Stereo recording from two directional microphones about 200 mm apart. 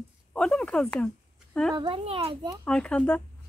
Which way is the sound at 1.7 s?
25° right (ahead or behind).